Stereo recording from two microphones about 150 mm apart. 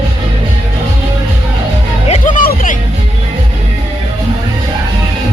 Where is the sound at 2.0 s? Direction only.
60° left (ahead or behind).